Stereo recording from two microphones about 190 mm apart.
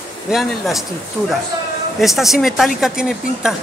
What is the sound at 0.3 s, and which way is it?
Speech, centre (ahead or behind).